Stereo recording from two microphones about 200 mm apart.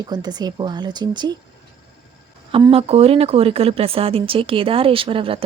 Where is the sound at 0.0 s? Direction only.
20° right (ahead or behind).